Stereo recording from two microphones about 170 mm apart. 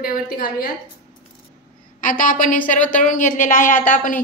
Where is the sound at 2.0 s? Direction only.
50° left (ahead or behind).